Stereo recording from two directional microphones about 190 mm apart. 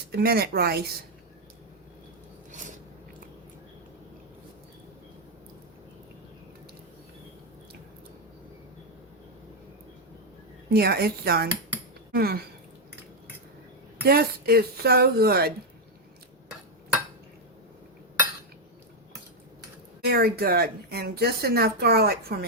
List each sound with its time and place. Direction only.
0.1 s speech: 55° right (ahead or behind)
10.7 s speech: 55° right (ahead or behind)
14.1 s speech: 55° right (ahead or behind)
20.1 s speech: 55° right (ahead or behind)